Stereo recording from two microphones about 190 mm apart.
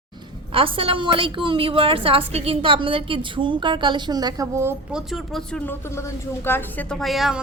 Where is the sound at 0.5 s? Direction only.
30° right (ahead or behind).